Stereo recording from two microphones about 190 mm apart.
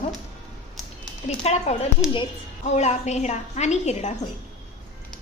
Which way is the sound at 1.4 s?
35° left (ahead or behind).